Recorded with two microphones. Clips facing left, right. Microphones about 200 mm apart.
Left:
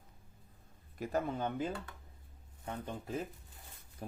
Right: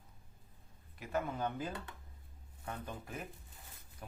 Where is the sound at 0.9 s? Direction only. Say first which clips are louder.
Left 3 dB; 45° left (ahead or behind).